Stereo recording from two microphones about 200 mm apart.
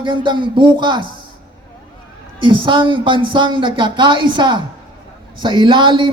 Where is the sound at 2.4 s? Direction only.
25° right (ahead or behind).